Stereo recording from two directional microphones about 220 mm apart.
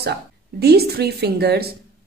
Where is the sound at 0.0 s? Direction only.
45° right (ahead or behind).